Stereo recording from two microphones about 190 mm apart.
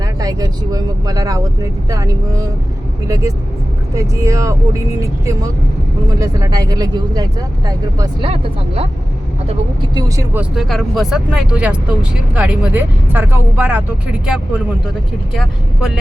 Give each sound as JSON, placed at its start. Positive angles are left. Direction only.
{"t": 0.0, "sound": "speech", "side_deg": -20}
{"t": 9.9, "sound": "speech", "side_deg": -20}
{"t": 10.5, "sound": "speech", "side_deg": 0}